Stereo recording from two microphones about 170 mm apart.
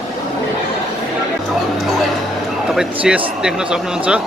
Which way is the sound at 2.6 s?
5° right (ahead or behind).